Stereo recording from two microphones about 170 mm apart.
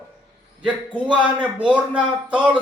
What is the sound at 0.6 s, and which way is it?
A man's voice, 10° right (ahead or behind).